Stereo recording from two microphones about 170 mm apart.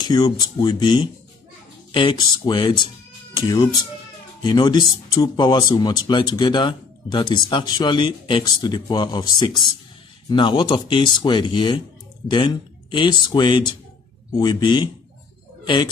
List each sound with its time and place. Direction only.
0.0 s speech: 25° left (ahead or behind)